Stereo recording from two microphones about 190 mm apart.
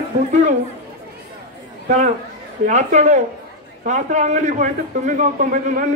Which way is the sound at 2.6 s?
40° right (ahead or behind).